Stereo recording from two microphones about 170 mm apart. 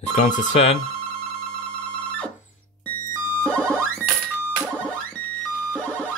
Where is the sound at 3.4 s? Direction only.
5° left (ahead or behind).